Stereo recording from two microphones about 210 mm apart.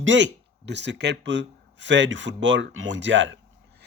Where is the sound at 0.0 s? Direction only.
60° right (ahead or behind).